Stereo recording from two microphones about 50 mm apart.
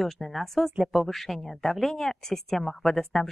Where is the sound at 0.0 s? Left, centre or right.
Centre.